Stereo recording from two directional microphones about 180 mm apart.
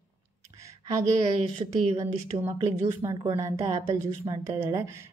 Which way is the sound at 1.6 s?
35° right (ahead or behind).